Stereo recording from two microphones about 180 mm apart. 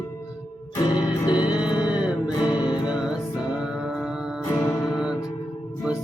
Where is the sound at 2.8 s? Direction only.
5° right (ahead or behind).